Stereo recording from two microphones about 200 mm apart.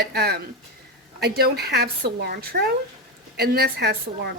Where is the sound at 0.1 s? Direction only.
55° right (ahead or behind).